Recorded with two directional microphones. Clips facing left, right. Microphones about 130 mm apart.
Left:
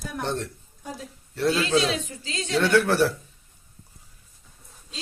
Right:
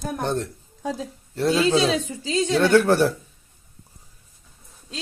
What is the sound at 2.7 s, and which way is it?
Speech, 40° right (ahead or behind).